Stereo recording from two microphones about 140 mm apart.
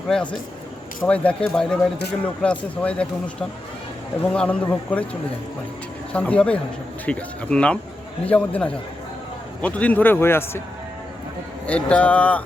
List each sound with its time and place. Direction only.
0.1 s a man's voice: 5° left (ahead or behind)
4.3 s a man's voice: 10° left (ahead or behind)
6.1 s a man's voice: 10° left (ahead or behind)
11.6 s a man's voice: 10° left (ahead or behind)